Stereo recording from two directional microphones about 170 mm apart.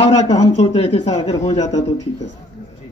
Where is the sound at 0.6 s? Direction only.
35° left (ahead or behind).